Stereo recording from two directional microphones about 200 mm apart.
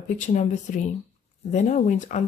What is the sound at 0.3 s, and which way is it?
Speech, 40° left (ahead or behind).